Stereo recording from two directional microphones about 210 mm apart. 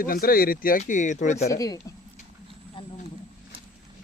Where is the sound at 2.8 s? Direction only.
25° left (ahead or behind).